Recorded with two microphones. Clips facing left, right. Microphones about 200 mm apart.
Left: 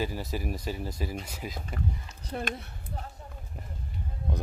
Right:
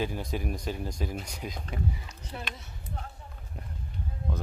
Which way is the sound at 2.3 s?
50° left (ahead or behind).